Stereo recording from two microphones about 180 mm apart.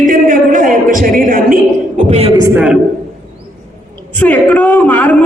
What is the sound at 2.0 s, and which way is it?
Speech, 35° right (ahead or behind).